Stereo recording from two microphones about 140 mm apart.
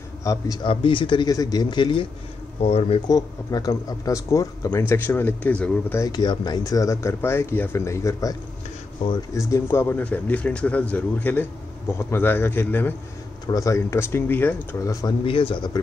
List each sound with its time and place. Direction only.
0.2 s speech: 25° left (ahead or behind)
0.7 s speech: 35° left (ahead or behind)
2.6 s speech: 50° left (ahead or behind)
3.1 s speech: 25° left (ahead or behind); by 5.9 s 10° left (ahead or behind)
5.9 s speech: 25° left (ahead or behind)
15.2 s speech: 35° left (ahead or behind)